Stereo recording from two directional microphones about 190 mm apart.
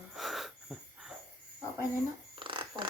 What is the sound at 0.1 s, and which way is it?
Wheeze, centre (ahead or behind).